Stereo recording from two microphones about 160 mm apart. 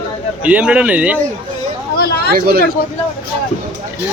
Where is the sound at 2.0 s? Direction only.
75° left (ahead or behind).